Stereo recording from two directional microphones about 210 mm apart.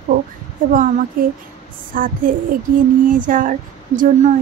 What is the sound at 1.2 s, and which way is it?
A woman's voice, 40° right (ahead or behind).